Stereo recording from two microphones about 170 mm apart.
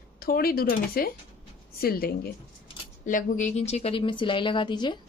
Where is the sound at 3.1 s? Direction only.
50° left (ahead or behind); by 5.0 s 25° left (ahead or behind).